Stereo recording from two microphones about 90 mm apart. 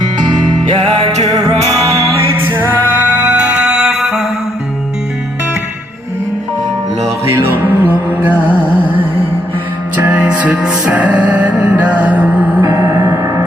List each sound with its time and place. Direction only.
0.0 s music: 50° right (ahead or behind); by 2.4 s 35° right (ahead or behind)
2.4 s music: 20° right (ahead or behind); by 4.3 s 5° right (ahead or behind)
7.5 s music: 20° right (ahead or behind)
12.7 s gong: 25° right (ahead or behind)